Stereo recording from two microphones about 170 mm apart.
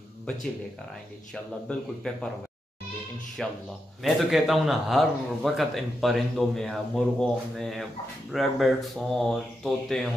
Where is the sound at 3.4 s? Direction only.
Centre (ahead or behind).